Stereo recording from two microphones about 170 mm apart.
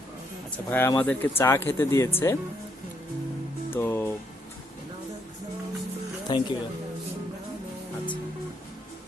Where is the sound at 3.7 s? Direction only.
15° left (ahead or behind).